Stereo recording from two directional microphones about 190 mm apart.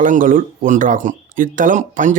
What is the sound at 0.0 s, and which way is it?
Speech, 45° right (ahead or behind).